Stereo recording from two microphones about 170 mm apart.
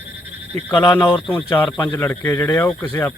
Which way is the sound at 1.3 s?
10° left (ahead or behind).